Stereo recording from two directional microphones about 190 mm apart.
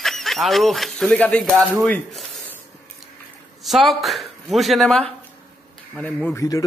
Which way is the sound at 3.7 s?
Centre (ahead or behind).